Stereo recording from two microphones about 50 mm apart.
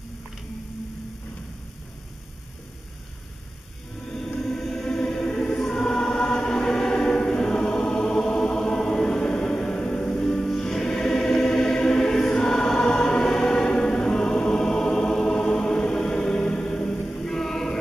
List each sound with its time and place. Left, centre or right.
4.6 s music: centre
5.7 s choir: centre
9.3 s music: centre
10.1 s music: centre
13.7 s choir: centre